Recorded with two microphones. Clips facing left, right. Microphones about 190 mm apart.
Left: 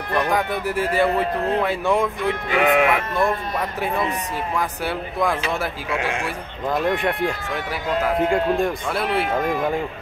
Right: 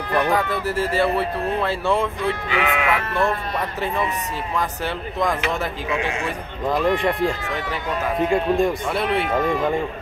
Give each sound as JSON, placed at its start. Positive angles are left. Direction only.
{"t": 0.3, "sound": "speech", "side_deg": 15}
{"t": 2.5, "sound": "speech", "side_deg": 50}
{"t": 4.6, "sound": "speech", "side_deg": 10}
{"t": 6.7, "sound": "speech", "side_deg": 0}
{"t": 8.3, "sound": "speech", "side_deg": 0}